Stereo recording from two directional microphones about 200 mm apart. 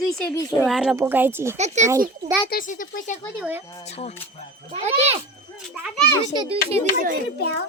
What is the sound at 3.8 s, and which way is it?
Speech, 30° left (ahead or behind).